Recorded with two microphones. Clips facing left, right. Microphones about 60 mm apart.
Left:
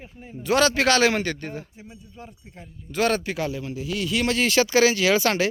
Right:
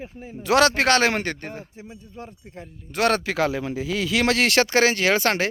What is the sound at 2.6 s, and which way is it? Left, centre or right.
Speech, right.